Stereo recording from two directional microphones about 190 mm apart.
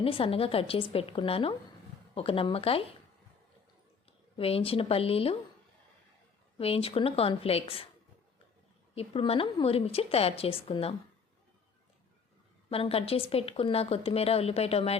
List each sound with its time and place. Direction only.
0.0 s a woman's voice: 30° left (ahead or behind)
4.4 s a woman's voice: 30° left (ahead or behind)
6.6 s a woman's voice: 30° left (ahead or behind)
9.0 s a woman's voice: 30° left (ahead or behind)
12.7 s a woman's voice: 30° left (ahead or behind)